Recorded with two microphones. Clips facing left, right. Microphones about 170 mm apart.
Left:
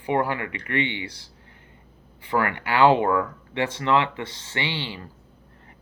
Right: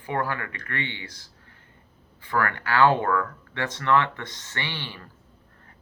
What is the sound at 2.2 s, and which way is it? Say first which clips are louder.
Speech: left 2 dB; 15° left (ahead or behind).